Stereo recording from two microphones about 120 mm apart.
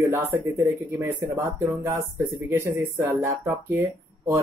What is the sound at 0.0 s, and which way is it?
Speech, 25° right (ahead or behind).